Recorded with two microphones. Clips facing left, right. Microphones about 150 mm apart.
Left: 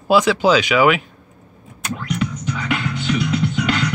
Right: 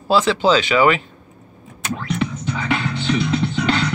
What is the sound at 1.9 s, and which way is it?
Music, 30° right (ahead or behind).